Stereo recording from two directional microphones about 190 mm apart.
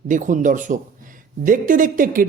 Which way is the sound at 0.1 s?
40° right (ahead or behind).